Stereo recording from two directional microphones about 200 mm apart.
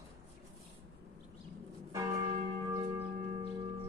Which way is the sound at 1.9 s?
15° right (ahead or behind).